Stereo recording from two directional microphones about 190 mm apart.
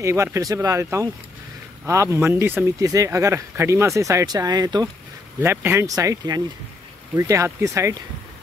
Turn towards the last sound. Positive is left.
turn(degrees=-15)  # may be behind; listen again after turning